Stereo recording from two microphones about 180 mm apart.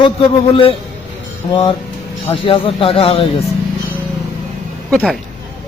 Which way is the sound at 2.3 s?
30° left (ahead or behind).